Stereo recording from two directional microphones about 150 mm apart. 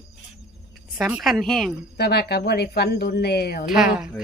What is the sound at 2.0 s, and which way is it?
Speech, 90° left.